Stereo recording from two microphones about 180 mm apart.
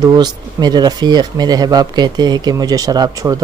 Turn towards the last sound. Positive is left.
turn(degrees=-20)  # may be behind; listen again after turning